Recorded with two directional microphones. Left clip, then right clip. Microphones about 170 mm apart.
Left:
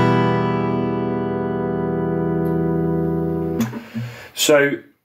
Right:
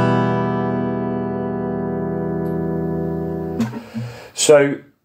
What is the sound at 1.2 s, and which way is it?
Music, 20° left (ahead or behind).